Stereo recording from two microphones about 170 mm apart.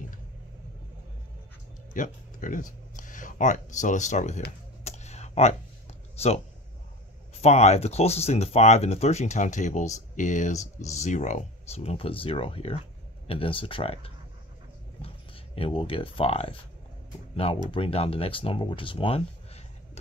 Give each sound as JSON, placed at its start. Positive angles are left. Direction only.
{"t": 2.0, "sound": "speech", "side_deg": 50}
{"t": 4.8, "sound": "a sound", "side_deg": 40}
{"t": 6.1, "sound": "speech", "side_deg": 40}
{"t": 7.4, "sound": "speech", "side_deg": 40}
{"t": 15.5, "sound": "speech", "side_deg": 30}
{"t": 17.6, "sound": "speech", "side_deg": 30}